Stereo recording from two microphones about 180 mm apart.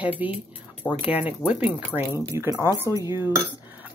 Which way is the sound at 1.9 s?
10° left (ahead or behind).